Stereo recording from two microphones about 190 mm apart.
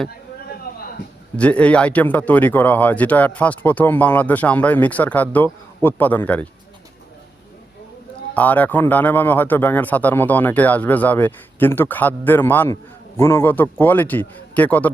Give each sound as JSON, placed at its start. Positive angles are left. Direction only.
{"t": 0.7, "sound": "a sound", "side_deg": 50}
{"t": 1.4, "sound": "speech", "side_deg": 5}
{"t": 8.4, "sound": "speech", "side_deg": 10}